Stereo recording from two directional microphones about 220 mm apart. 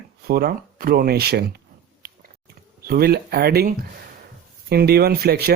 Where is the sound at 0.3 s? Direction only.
45° right (ahead or behind).